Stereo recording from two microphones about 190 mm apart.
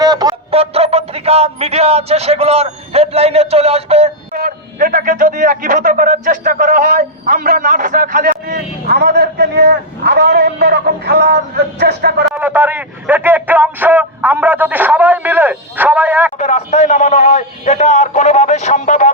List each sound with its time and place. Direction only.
0.0 s speech: 20° right (ahead or behind)
4.4 s a man's voice: 45° right (ahead or behind)
8.4 s a man's voice: 55° right (ahead or behind)
12.3 s a man's voice: 10° right (ahead or behind)
16.4 s a man's voice: 35° left (ahead or behind)